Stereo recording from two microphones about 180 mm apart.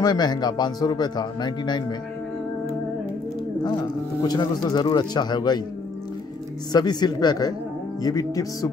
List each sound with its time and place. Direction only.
0.0 s speech: 25° left (ahead or behind)
3.6 s speech: 20° left (ahead or behind)
6.7 s speech: 20° left (ahead or behind)